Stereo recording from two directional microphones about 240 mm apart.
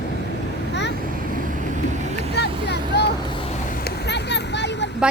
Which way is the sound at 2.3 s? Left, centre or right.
Left.